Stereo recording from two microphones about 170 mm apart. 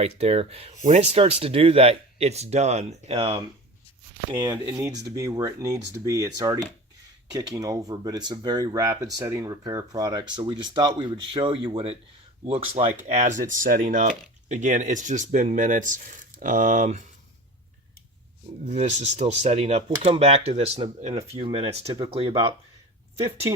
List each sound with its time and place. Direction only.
0.0 s speech: 35° right (ahead or behind)
4.4 s speech: 15° right (ahead or behind); by 17.1 s 45° right (ahead or behind)
18.6 s speech: 40° right (ahead or behind)
23.2 s speech: 20° right (ahead or behind)